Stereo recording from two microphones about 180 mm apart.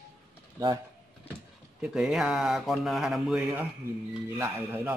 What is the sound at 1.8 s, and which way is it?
A man's voice, 5° right (ahead or behind).